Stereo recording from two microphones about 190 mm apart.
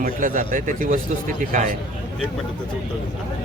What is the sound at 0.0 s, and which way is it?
Speech, 45° right (ahead or behind).